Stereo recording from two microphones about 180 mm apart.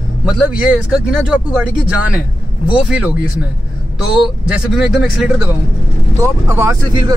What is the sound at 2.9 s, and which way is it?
Speech, 5° right (ahead or behind).